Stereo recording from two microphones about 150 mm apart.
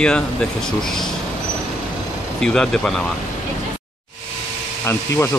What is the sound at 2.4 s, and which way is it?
Speech, 5° left (ahead or behind).